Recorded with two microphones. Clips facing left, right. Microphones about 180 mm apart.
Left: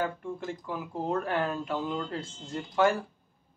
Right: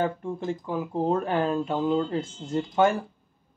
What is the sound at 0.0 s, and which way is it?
Speech, 25° right (ahead or behind).